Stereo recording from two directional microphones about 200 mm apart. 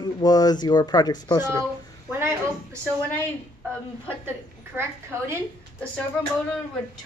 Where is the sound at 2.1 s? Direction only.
10° right (ahead or behind).